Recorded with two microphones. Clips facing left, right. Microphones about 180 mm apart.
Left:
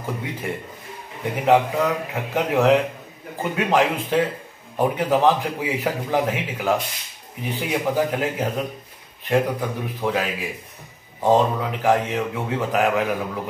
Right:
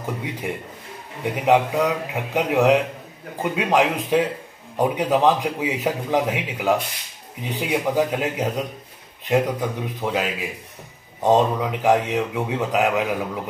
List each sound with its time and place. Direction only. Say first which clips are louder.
0.0 s a man's voice: right 1 dB; 15° right (ahead or behind)